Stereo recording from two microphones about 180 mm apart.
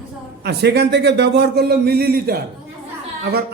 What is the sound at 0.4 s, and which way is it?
A man's voice, 65° right (ahead or behind).